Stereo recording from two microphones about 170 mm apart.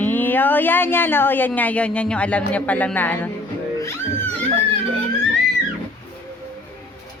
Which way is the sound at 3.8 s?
15° left (ahead or behind).